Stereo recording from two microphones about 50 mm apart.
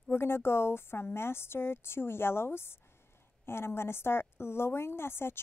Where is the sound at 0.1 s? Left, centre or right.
Left.